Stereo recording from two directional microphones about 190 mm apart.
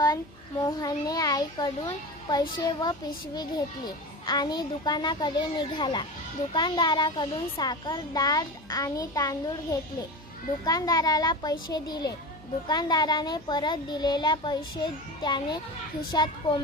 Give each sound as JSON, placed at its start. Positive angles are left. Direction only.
{"t": 0.7, "sound": "a child's voice", "side_deg": 20}